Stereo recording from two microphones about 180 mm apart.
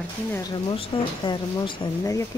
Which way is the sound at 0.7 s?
25° left (ahead or behind).